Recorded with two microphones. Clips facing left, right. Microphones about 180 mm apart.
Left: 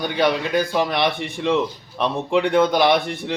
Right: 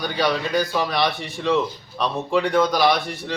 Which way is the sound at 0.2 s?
20° left (ahead or behind).